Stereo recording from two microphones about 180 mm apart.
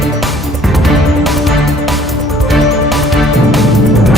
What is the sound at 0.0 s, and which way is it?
Music, centre (ahead or behind).